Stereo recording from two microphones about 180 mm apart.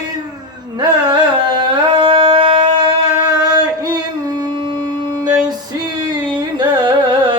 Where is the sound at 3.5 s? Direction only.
20° right (ahead or behind).